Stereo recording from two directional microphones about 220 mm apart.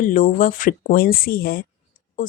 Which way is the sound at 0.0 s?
35° left (ahead or behind).